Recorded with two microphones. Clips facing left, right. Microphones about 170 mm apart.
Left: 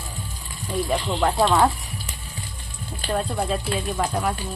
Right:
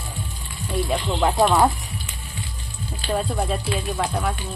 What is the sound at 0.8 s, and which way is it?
Speech, 5° right (ahead or behind).